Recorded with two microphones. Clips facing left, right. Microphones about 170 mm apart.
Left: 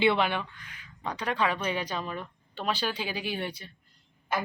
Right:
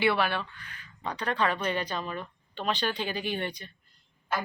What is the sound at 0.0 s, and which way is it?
Speech, 20° left (ahead or behind).